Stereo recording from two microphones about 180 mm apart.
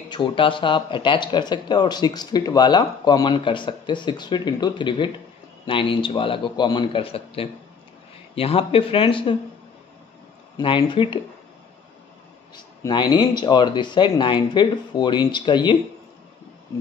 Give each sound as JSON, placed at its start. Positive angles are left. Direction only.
{"t": 0.1, "sound": "speech", "side_deg": 25}
{"t": 10.6, "sound": "speech", "side_deg": 25}
{"t": 12.5, "sound": "speech", "side_deg": 25}